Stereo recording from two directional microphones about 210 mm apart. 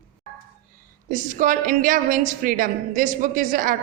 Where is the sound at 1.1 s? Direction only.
40° right (ahead or behind).